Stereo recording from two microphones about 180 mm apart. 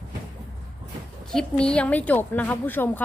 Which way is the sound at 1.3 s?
5° left (ahead or behind).